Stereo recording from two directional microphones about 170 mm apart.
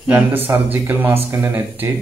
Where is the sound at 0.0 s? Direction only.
10° right (ahead or behind).